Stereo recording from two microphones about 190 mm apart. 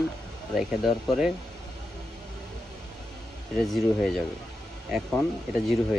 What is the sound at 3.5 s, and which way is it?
Speech, centre (ahead or behind).